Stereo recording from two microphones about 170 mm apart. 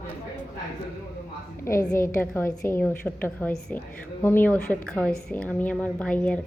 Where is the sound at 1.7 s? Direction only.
15° left (ahead or behind).